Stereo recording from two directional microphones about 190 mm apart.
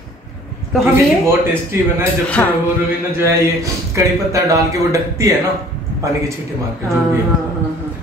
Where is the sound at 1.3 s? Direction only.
15° right (ahead or behind).